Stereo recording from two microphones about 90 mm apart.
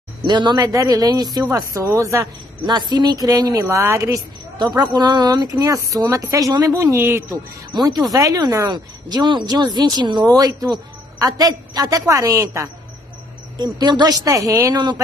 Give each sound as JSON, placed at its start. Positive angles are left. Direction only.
{"t": 0.2, "sound": "speech", "side_deg": -55}
{"t": 0.7, "sound": "a woman's voice", "side_deg": -45}
{"t": 2.6, "sound": "a woman's voice", "side_deg": -55}
{"t": 4.6, "sound": "a woman's voice", "side_deg": -50}
{"t": 8.1, "sound": "speech", "side_deg": -40}
{"t": 8.6, "sound": "a woman's voice", "side_deg": -55}
{"t": 10.2, "sound": "a woman's voice", "side_deg": -45}
{"t": 13.7, "sound": "a woman's voice", "side_deg": -50}
{"t": 14.2, "sound": "speech", "side_deg": -40}